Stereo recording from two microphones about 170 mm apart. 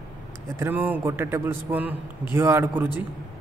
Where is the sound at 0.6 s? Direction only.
10° right (ahead or behind).